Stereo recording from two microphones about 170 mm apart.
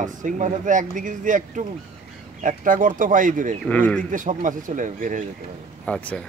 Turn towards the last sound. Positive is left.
turn(degrees=10)  # may be behind; listen again after turning